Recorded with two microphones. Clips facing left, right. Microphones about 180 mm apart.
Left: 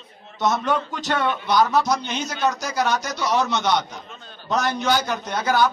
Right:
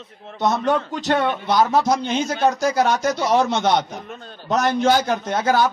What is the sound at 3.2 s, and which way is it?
Speech, 30° right (ahead or behind).